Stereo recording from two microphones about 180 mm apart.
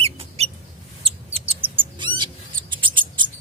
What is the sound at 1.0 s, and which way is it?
Mouse, 30° right (ahead or behind).